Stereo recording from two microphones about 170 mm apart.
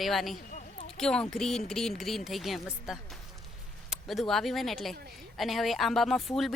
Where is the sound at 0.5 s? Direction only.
40° left (ahead or behind).